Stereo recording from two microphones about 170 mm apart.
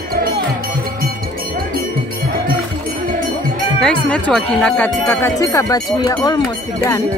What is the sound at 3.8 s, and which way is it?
Speech, 5° left (ahead or behind).